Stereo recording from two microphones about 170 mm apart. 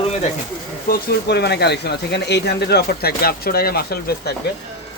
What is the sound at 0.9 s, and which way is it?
Speech, 70° left (ahead or behind).